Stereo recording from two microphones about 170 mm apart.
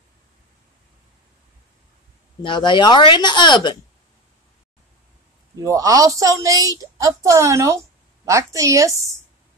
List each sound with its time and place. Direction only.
2.4 s speech: 30° left (ahead or behind)
5.6 s a woman's voice: 20° right (ahead or behind)